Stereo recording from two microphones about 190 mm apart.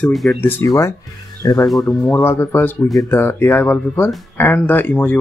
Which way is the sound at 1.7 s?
Centre (ahead or behind).